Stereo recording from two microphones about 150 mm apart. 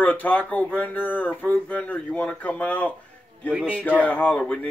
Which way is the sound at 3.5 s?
5° right (ahead or behind).